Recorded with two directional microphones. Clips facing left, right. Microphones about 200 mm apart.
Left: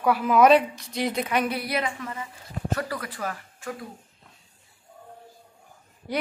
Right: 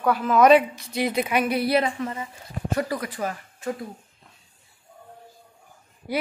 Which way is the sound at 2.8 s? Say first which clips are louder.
Right 4 dB; 15° right (ahead or behind).